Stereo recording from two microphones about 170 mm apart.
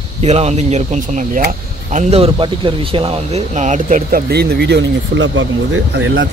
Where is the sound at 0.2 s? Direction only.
40° right (ahead or behind); by 5.3 s 85° right.